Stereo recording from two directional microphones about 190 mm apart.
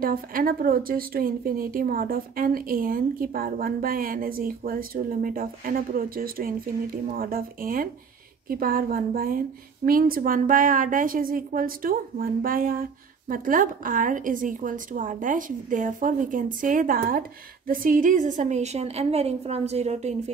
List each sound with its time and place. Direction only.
0.0 s a woman's voice: 50° right (ahead or behind)